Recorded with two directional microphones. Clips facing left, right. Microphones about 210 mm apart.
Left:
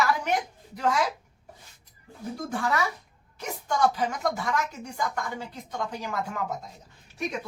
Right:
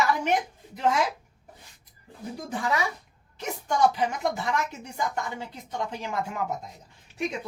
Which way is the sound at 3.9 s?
25° right (ahead or behind).